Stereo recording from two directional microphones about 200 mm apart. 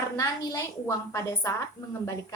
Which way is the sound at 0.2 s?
15° left (ahead or behind).